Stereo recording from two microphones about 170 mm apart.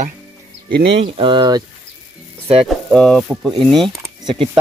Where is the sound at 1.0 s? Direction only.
30° right (ahead or behind).